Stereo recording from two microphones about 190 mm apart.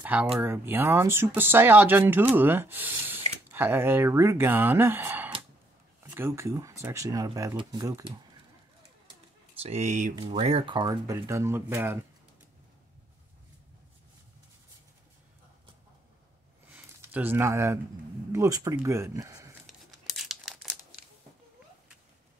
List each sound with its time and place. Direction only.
0.0 s speech: 5° right (ahead or behind)
9.6 s speech: 35° right (ahead or behind)
10.1 s speech: 25° right (ahead or behind)
16.7 s a sound: 10° right (ahead or behind)
18.3 s speech: 15° right (ahead or behind)
19.6 s crumpling: centre (ahead or behind)